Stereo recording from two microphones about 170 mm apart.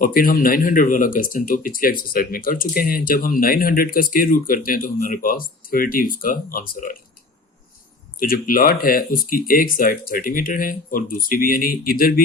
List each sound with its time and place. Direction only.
0.0 s speech: 55° left (ahead or behind)
8.2 s speech: 55° left (ahead or behind)